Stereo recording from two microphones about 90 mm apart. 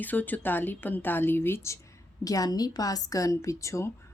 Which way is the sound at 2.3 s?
40° left (ahead or behind).